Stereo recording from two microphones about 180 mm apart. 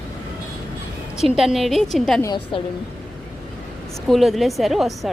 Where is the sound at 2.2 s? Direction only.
25° left (ahead or behind).